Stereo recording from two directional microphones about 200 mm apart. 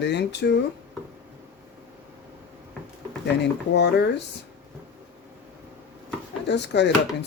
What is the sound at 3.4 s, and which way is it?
Speech, 60° left (ahead or behind).